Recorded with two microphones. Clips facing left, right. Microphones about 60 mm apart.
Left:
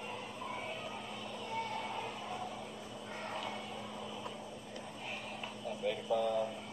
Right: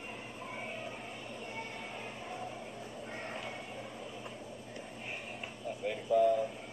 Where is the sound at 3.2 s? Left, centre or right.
Right.